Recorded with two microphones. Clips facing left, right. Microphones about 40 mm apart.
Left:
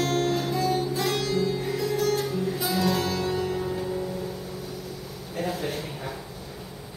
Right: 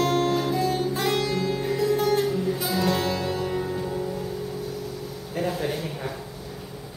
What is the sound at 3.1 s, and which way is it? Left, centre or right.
Music, centre.